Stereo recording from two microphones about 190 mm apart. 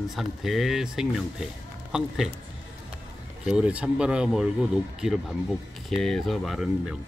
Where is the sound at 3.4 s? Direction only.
5° right (ahead or behind).